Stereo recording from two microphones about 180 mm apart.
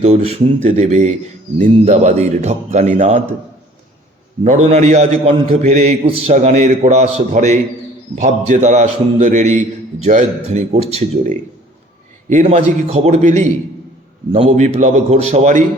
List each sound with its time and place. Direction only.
0.0 s a man's voice: 35° right (ahead or behind)
4.4 s a man's voice: 40° right (ahead or behind)